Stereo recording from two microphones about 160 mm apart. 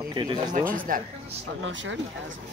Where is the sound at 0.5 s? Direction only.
60° right (ahead or behind).